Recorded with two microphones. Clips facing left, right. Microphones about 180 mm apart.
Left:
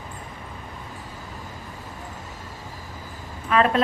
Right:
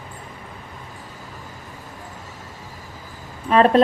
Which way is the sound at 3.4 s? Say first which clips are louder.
Right 5 dB; 35° right (ahead or behind).